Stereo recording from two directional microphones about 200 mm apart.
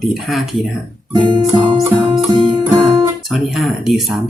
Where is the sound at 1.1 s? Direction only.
25° right (ahead or behind).